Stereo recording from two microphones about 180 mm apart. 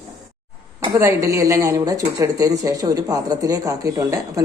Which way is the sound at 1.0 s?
15° right (ahead or behind).